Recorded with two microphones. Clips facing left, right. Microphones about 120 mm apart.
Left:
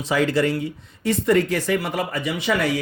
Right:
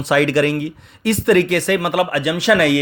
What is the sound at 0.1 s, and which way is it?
Speech, 75° right (ahead or behind).